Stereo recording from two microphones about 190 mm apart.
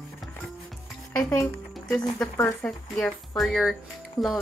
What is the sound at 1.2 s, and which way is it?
Speech, centre (ahead or behind).